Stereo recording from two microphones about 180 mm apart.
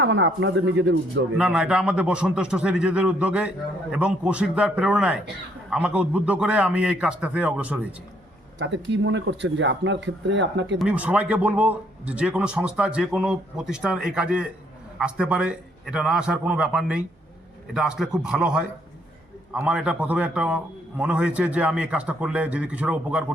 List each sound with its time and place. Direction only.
0.0 s speech: 90° right
1.4 s a man's voice: 5° right (ahead or behind)
8.5 s speech: 80° right
10.8 s a man's voice: 5° right (ahead or behind)